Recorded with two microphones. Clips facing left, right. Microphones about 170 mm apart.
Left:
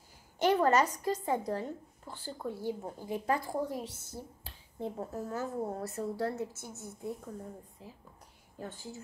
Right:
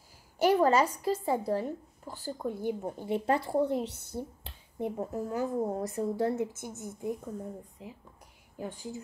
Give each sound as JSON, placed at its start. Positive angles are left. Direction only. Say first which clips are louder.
{"t": 0.4, "sound": "a woman's voice", "louder": "right 2 dB", "side_deg": -10}
{"t": 3.8, "sound": "speech", "louder": "right 6 dB", "side_deg": -65}
{"t": 4.2, "sound": "a woman's voice", "louder": "right 10 dB", "side_deg": -20}
{"t": 7.8, "sound": "a woman's voice", "louder": "right 4 dB", "side_deg": -15}